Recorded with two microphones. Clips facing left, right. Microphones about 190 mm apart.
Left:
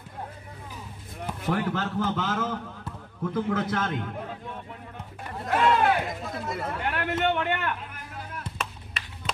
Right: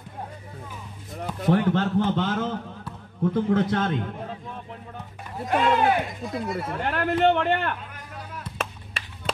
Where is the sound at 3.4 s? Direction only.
25° right (ahead or behind).